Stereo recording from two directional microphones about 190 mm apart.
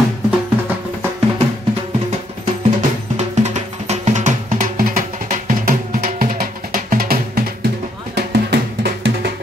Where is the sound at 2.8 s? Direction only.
35° right (ahead or behind).